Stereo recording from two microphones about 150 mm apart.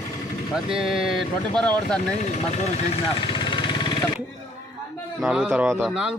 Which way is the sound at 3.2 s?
35° left (ahead or behind).